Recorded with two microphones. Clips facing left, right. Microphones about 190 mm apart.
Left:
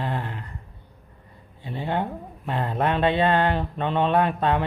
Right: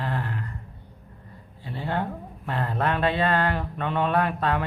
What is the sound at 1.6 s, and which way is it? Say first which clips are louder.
Speech: left 2 dB; 20° left (ahead or behind).